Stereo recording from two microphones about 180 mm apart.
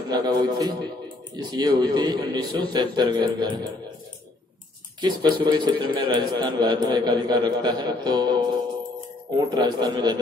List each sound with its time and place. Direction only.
0.1 s a man's voice: 20° right (ahead or behind)
5.0 s a man's voice: 25° right (ahead or behind)
9.5 s a man's voice: 25° right (ahead or behind)